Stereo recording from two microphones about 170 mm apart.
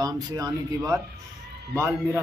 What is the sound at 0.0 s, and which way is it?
Speech, 20° right (ahead or behind).